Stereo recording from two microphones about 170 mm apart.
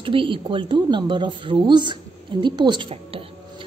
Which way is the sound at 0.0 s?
30° right (ahead or behind).